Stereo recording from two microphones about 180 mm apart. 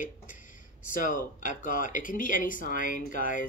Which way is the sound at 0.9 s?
45° left (ahead or behind).